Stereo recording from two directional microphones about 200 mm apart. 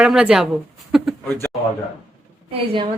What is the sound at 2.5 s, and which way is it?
Speech, 25° right (ahead or behind).